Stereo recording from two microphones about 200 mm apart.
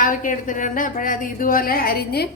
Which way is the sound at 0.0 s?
40° left (ahead or behind).